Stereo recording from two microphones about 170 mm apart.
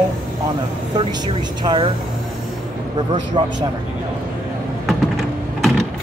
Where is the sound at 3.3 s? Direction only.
30° right (ahead or behind).